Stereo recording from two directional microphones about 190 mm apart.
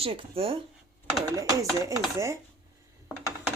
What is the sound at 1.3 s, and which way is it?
Speech, 20° right (ahead or behind).